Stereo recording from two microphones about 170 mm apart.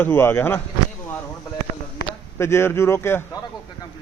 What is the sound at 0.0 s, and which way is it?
Speech, 15° left (ahead or behind).